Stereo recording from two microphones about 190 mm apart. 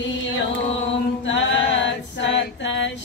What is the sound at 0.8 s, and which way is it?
A capella, 75° left (ahead or behind).